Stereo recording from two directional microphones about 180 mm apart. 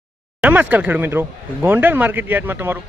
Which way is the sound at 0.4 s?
10° right (ahead or behind).